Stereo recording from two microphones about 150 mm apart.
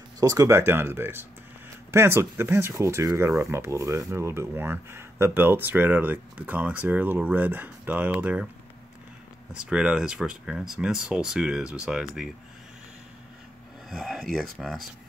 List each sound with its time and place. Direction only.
0.2 s speech: 20° right (ahead or behind)
9.5 s speech: 5° right (ahead or behind)
13.8 s speech: 5° right (ahead or behind)